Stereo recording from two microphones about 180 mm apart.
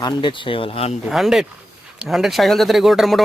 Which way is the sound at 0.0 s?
25° left (ahead or behind).